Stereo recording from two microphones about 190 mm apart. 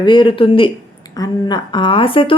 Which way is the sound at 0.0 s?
25° left (ahead or behind).